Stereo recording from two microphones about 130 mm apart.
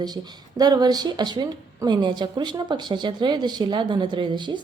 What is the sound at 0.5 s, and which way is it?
A woman's voice, 30° right (ahead or behind).